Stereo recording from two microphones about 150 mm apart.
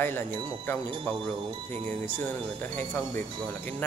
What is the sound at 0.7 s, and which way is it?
Speech, 10° left (ahead or behind).